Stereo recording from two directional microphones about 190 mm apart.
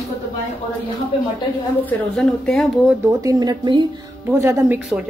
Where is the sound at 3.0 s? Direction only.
20° right (ahead or behind).